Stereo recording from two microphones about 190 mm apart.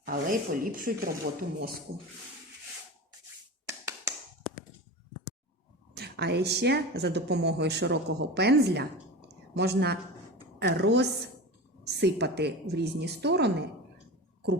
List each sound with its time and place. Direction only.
0.0 s speech: 45° right (ahead or behind)
3.7 s tap: 15° right (ahead or behind)
5.9 s speech: 60° right (ahead or behind)